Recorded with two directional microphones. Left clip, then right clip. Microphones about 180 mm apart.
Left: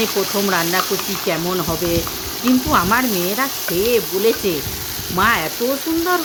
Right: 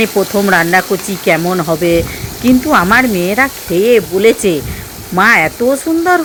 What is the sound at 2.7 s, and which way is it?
Frying, 30° right (ahead or behind).